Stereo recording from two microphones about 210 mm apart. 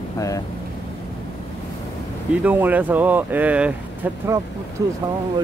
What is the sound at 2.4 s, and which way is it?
Speech, 10° right (ahead or behind).